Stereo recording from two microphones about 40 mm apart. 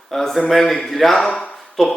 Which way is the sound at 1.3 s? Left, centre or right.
Left.